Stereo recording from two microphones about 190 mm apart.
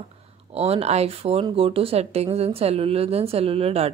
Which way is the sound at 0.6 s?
30° right (ahead or behind).